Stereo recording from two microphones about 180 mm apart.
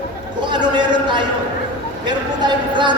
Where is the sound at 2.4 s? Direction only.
25° right (ahead or behind).